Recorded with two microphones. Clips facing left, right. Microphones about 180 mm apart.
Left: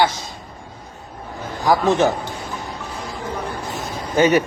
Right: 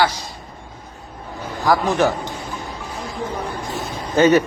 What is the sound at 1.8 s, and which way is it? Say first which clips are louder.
Speech: left 1 dB; 20° left (ahead or behind).